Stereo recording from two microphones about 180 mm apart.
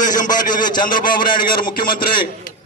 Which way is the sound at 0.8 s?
50° left (ahead or behind).